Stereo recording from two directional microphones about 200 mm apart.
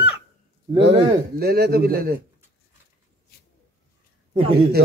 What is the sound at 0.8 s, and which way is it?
Speech, 55° right (ahead or behind).